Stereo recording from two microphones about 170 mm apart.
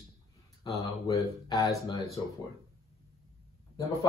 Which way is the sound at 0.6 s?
20° left (ahead or behind).